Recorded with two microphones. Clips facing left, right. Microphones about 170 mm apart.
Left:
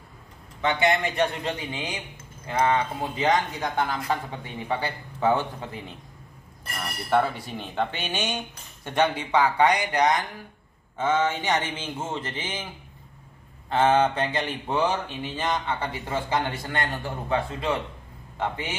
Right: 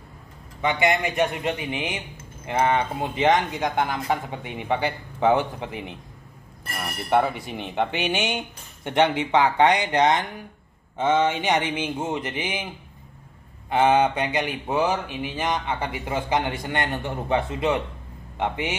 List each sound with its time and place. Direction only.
0.6 s speech: 15° right (ahead or behind)
13.7 s speech: 15° right (ahead or behind)